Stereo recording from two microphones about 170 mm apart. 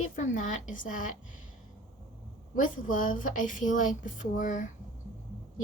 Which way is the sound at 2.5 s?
50° left (ahead or behind).